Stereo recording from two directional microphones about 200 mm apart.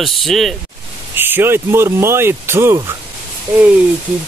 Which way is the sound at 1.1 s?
10° right (ahead or behind).